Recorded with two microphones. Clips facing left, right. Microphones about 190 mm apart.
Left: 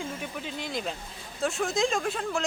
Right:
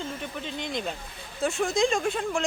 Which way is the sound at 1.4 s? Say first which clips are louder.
Right 2 dB; centre (ahead or behind).